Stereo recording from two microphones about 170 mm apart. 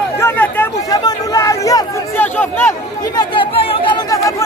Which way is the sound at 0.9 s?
20° left (ahead or behind).